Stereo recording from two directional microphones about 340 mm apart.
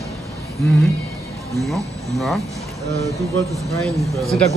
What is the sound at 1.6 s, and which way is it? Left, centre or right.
Speech, centre.